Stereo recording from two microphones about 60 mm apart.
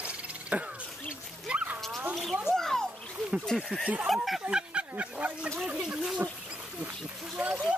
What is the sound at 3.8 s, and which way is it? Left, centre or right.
Speech, right.